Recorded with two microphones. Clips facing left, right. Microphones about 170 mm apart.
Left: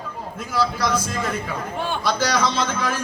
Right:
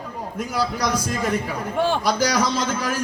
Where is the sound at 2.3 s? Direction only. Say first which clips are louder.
Even; 40° right (ahead or behind).